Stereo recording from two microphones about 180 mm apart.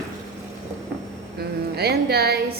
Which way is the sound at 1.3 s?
60° right (ahead or behind).